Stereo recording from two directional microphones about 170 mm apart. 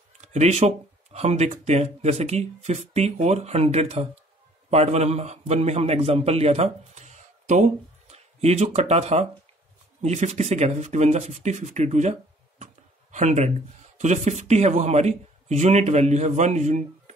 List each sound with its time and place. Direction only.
0.2 s a man's voice: 40° right (ahead or behind)